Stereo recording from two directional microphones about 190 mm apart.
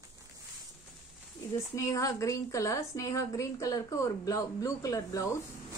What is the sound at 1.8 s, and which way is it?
A woman's voice, 15° left (ahead or behind).